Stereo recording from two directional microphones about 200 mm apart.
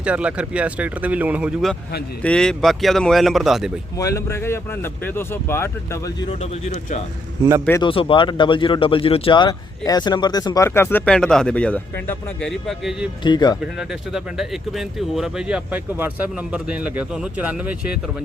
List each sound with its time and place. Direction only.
0.0 s speech: 5° right (ahead or behind)
3.9 s speech: 15° left (ahead or behind)
7.8 s speech: 25° left (ahead or behind); by 13.1 s centre (ahead or behind)
13.2 s speech: 20° left (ahead or behind)
13.7 s speech: centre (ahead or behind)